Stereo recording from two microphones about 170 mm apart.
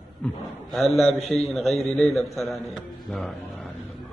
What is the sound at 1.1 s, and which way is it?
Speech, 35° left (ahead or behind).